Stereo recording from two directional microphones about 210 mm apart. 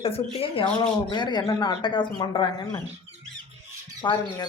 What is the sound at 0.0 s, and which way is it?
Speech, 25° left (ahead or behind).